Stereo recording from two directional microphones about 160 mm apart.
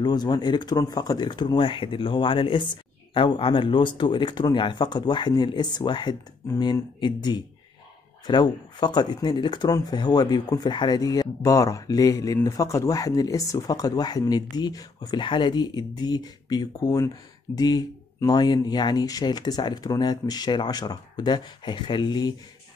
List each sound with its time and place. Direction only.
0.0 s speech: 25° left (ahead or behind)